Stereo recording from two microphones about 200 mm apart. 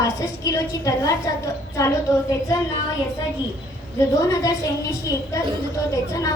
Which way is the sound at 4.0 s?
15° left (ahead or behind).